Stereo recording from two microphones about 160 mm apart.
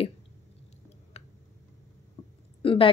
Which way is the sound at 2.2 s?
20° left (ahead or behind).